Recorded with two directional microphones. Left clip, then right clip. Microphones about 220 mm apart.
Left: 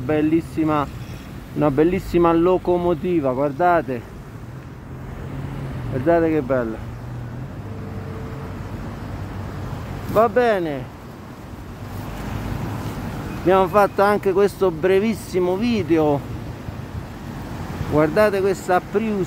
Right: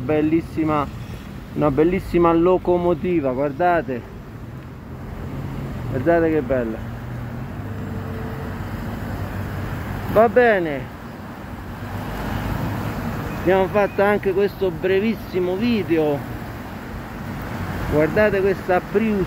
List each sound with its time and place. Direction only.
0.0 s speech: 15° left (ahead or behind)
6.0 s speech: 20° left (ahead or behind)
10.1 s speech: 10° left (ahead or behind)
13.5 s speech: 30° left (ahead or behind)
14.3 s speech: 35° left (ahead or behind)
17.9 s speech: 25° left (ahead or behind)